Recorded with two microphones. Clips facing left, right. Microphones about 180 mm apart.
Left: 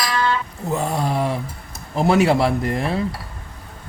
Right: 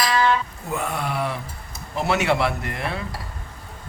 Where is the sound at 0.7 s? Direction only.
35° left (ahead or behind).